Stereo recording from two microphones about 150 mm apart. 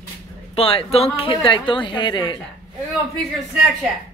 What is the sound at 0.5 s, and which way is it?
A woman's voice, 40° left (ahead or behind).